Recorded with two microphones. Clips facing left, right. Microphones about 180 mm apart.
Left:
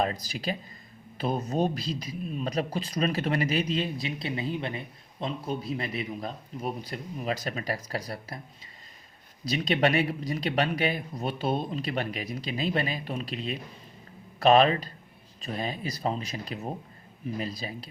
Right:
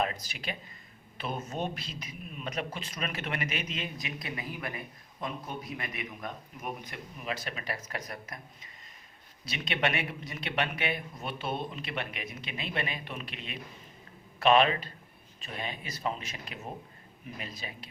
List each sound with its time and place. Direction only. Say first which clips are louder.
0.0 s speech: left 4 dB; 35° left (ahead or behind)
9.5 s speech: left 7 dB; 35° left (ahead or behind)